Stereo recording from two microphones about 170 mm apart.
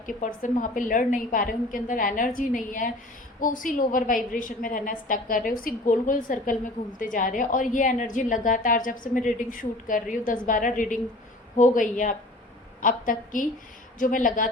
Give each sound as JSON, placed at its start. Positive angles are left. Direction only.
{"t": 0.0, "sound": "a woman's voice", "side_deg": 50}